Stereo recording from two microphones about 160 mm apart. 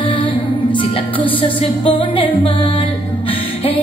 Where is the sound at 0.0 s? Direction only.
30° left (ahead or behind).